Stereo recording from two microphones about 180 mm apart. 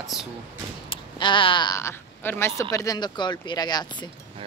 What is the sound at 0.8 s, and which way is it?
Speech, 25° left (ahead or behind).